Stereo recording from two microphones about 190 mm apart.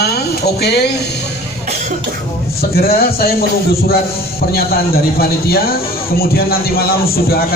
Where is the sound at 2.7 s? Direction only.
50° left (ahead or behind).